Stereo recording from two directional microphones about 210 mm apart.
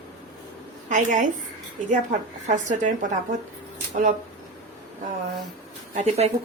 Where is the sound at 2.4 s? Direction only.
35° right (ahead or behind).